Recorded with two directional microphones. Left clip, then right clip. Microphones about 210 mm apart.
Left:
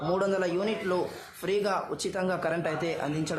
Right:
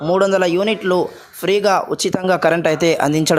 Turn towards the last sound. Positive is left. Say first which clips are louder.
# right 16 dB
turn(degrees=-45)  # may be behind; listen again after turning